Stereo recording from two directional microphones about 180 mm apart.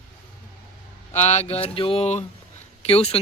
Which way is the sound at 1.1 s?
40° left (ahead or behind).